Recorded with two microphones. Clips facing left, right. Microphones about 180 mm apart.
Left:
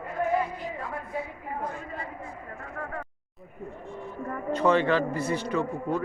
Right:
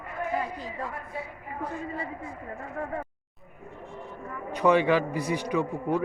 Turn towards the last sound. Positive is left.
turn(degrees=-15)  # may be behind; listen again after turning